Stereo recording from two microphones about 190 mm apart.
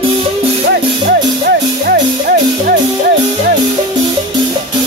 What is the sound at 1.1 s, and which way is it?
Music, 55° right (ahead or behind).